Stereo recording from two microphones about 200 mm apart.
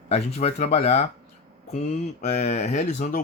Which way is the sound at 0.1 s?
30° left (ahead or behind).